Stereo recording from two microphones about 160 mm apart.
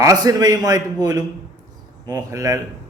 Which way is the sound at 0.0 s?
20° right (ahead or behind).